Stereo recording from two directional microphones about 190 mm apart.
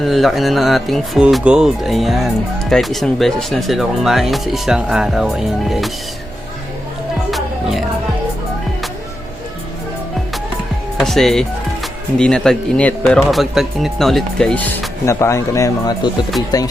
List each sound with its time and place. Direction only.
0.0 s speech: centre (ahead or behind)
7.3 s music: centre (ahead or behind)
10.9 s speech: centre (ahead or behind); by 16.7 s 20° left (ahead or behind)